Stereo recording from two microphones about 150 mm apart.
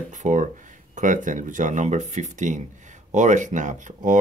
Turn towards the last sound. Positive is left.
turn(degrees=-55)  # may be behind; listen again after turning